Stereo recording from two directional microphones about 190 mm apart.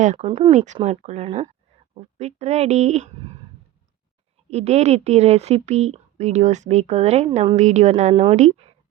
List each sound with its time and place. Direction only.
0.0 s speech: 35° right (ahead or behind)
0.5 s speech: 40° right (ahead or behind)
4.4 s speech: 35° right (ahead or behind)